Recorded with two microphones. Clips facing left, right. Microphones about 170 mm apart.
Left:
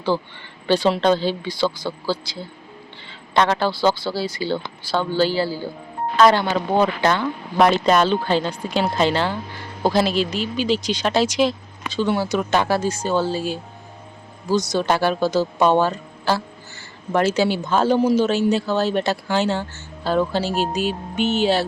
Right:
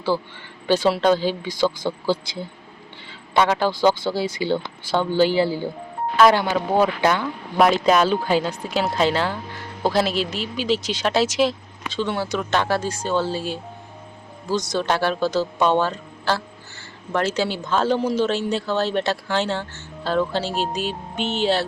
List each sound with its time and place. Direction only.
0.9 s speech: 10° right (ahead or behind)
3.3 s speech: 10° right (ahead or behind)